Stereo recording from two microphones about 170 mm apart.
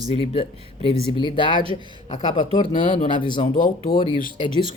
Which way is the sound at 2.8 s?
45° left (ahead or behind).